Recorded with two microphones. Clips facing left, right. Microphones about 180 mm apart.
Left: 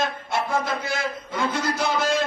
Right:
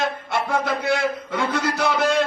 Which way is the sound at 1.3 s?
60° right (ahead or behind).